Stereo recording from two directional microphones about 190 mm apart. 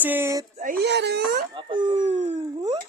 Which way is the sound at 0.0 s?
10° right (ahead or behind).